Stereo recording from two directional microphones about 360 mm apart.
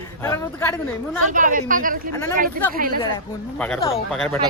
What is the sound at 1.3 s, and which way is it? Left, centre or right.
Speech, right.